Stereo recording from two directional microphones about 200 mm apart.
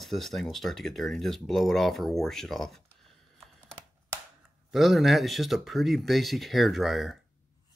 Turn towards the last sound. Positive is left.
turn(degrees=0)  # may be behind; listen again after turning